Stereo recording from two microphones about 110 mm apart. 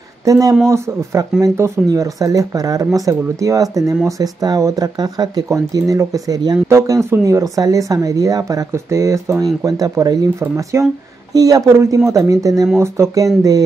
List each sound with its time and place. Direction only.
0.2 s speech: 30° right (ahead or behind)